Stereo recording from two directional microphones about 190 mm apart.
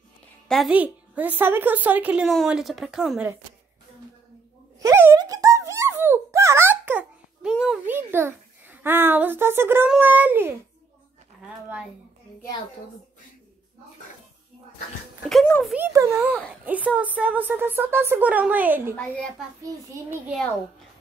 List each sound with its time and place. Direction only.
0.5 s a woman's voice: centre (ahead or behind)
4.7 s a sound: 15° right (ahead or behind)
15.2 s speech: 5° left (ahead or behind)
15.7 s a child's voice: 15° right (ahead or behind)
18.9 s speech: 5° left (ahead or behind)
19.6 s a child's voice: 15° right (ahead or behind)